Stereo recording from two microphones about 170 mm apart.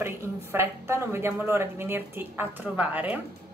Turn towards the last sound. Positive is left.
turn(degrees=-10)  # may be behind; listen again after turning